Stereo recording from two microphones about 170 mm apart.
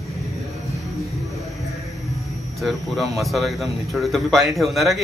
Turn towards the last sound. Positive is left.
turn(degrees=0)  # may be behind; listen again after turning